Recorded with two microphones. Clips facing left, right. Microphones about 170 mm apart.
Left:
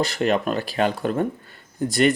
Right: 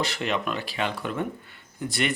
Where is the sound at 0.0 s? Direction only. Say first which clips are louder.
Left 6 dB; 40° left (ahead or behind).